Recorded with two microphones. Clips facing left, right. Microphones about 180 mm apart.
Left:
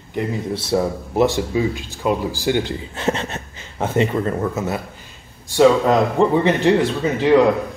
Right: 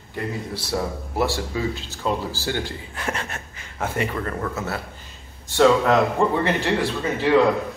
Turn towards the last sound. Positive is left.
turn(degrees=20)  # may be behind; listen again after turning